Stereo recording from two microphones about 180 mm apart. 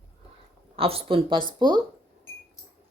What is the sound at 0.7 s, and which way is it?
Speech, 30° right (ahead or behind).